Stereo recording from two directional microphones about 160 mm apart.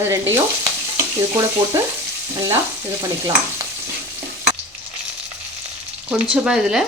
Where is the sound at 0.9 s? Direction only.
15° right (ahead or behind).